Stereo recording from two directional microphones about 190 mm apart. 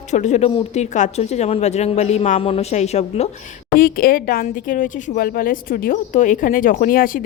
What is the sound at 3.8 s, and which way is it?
Speech, 50° left (ahead or behind).